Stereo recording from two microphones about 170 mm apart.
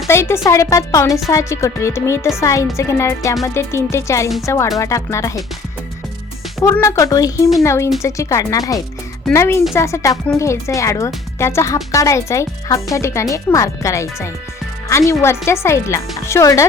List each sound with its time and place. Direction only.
0.1 s speech: 15° left (ahead or behind)
6.6 s speech: 15° left (ahead or behind)